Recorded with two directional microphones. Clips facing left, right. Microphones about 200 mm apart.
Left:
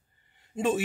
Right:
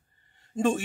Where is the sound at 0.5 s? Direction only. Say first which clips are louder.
Right 1 dB; 45° right (ahead or behind).